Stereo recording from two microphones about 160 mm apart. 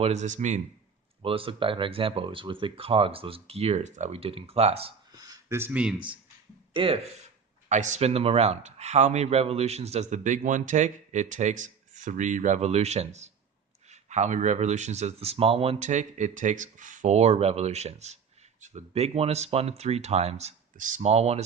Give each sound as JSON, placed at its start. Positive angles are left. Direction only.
{"t": 0.0, "sound": "speech", "side_deg": -45}
{"t": 1.2, "sound": "speech", "side_deg": -35}
{"t": 5.1, "sound": "a sound", "side_deg": -20}
{"t": 6.7, "sound": "speech", "side_deg": -35}
{"t": 7.7, "sound": "speech", "side_deg": -50}